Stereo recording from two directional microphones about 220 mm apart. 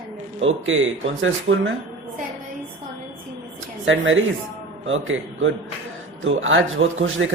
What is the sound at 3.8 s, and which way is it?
Speech, 60° right (ahead or behind).